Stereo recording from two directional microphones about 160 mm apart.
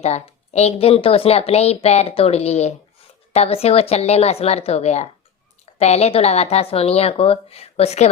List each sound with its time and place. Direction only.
0.0 s speech: 45° left (ahead or behind)